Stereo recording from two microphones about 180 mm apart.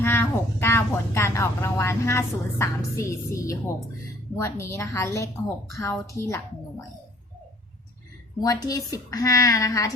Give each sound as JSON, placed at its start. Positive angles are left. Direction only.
{"t": 0.0, "sound": "a woman's voice", "side_deg": 15}
{"t": 8.4, "sound": "a woman's voice", "side_deg": 20}